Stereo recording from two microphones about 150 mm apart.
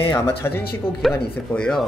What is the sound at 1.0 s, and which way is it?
Speech, 5° left (ahead or behind).